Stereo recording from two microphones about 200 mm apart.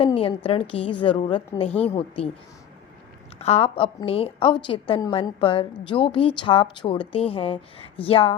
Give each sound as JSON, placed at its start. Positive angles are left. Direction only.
{"t": 0.0, "sound": "a woman's voice", "side_deg": 25}
{"t": 3.3, "sound": "a woman's voice", "side_deg": 30}